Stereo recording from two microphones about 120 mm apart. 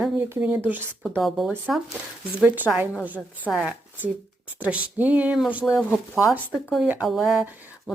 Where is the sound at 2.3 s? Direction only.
15° right (ahead or behind).